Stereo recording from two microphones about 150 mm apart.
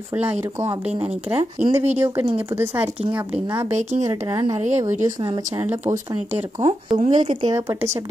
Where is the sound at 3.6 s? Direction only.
50° right (ahead or behind).